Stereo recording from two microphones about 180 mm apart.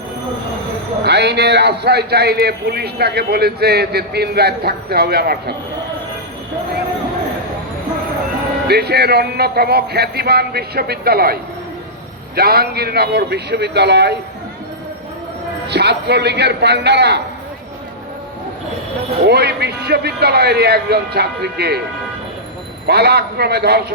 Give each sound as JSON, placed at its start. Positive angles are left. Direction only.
{"t": 1.0, "sound": "a man's voice", "side_deg": -70}
{"t": 8.6, "sound": "a man's voice", "side_deg": -60}
{"t": 12.4, "sound": "a man's voice", "side_deg": -60}
{"t": 15.6, "sound": "speech", "side_deg": -65}
{"t": 19.2, "sound": "a man's voice", "side_deg": -65}
{"t": 22.9, "sound": "a man's voice", "side_deg": -65}